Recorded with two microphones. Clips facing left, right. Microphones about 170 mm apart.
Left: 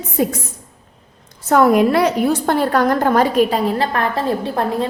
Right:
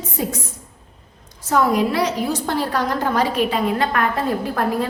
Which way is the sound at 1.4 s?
60° left (ahead or behind).